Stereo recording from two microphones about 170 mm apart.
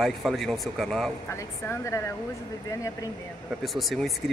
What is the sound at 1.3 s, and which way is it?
A woman's voice, 15° left (ahead or behind).